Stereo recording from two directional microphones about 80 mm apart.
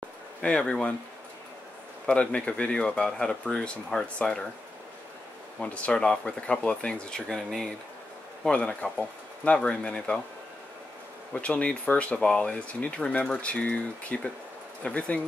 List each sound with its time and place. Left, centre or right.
0.4 s speech: centre
2.0 s speech: centre
5.6 s speech: centre
11.3 s speech: centre